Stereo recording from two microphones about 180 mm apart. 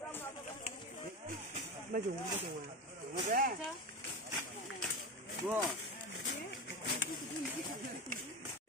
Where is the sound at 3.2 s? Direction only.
45° right (ahead or behind).